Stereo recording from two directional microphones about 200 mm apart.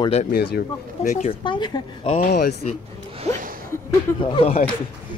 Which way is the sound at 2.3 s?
55° left (ahead or behind).